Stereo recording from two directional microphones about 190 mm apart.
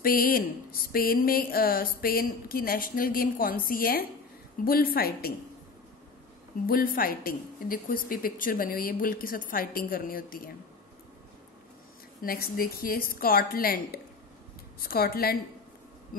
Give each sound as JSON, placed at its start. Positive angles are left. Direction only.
{"t": 0.0, "sound": "speech", "side_deg": 50}
{"t": 6.6, "sound": "speech", "side_deg": 50}
{"t": 12.2, "sound": "speech", "side_deg": 50}